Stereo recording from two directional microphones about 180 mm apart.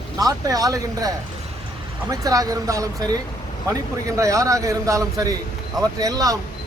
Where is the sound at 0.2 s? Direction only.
20° right (ahead or behind).